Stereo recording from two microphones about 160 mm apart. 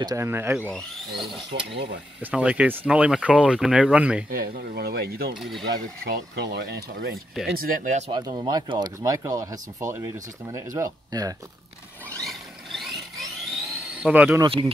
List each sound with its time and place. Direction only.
0.0 s speech: 15° right (ahead or behind)
0.7 s speech: centre (ahead or behind)
1.5 s speech: 90° right
2.3 s speech: 5° right (ahead or behind)
4.3 s speech: 70° right (ahead or behind)
5.4 s speech: centre (ahead or behind)
6.3 s speech: 90° right
7.4 s speech: 65° right (ahead or behind)
8.1 s speech: 25° right (ahead or behind)
12.2 s a sound: centre (ahead or behind)
14.4 s speech: 30° right (ahead or behind)